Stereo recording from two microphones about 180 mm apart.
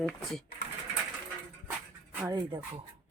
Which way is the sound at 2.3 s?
25° right (ahead or behind).